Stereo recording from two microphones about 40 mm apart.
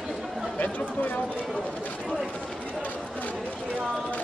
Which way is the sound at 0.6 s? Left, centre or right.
Left.